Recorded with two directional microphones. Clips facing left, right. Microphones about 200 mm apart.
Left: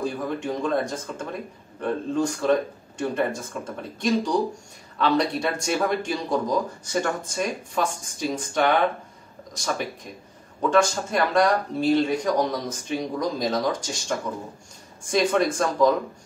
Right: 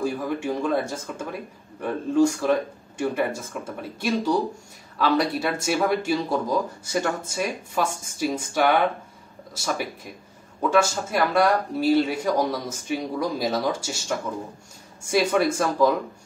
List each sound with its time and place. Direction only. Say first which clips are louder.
0.0 s speech: right 1 dB; 10° right (ahead or behind)